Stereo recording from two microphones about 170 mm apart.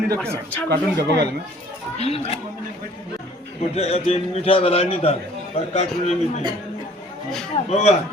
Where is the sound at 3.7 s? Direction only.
40° left (ahead or behind).